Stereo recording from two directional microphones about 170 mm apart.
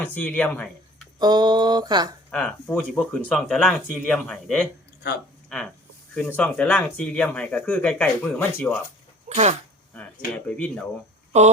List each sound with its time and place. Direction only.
0.0 s speech: 10° left (ahead or behind)
1.2 s speech: 25° right (ahead or behind)
2.3 s speech: 5° left (ahead or behind)
9.3 s speech: 40° right (ahead or behind)
10.3 s speech: 10° left (ahead or behind)
11.3 s speech: 40° right (ahead or behind)